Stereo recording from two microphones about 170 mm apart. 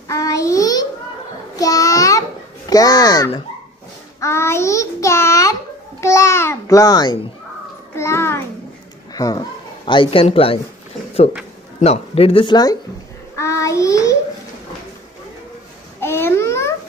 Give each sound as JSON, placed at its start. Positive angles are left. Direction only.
{"t": 0.1, "sound": "a sound", "side_deg": 20}
{"t": 1.6, "sound": "child singing", "side_deg": 20}
{"t": 4.2, "sound": "a child's voice", "side_deg": 15}
{"t": 7.9, "sound": "a sound", "side_deg": 15}
{"t": 9.1, "sound": "a woman's voice", "side_deg": 20}
{"t": 11.8, "sound": "speech", "side_deg": 35}
{"t": 13.4, "sound": "child singing", "side_deg": 15}
{"t": 16.0, "sound": "babbling", "side_deg": 15}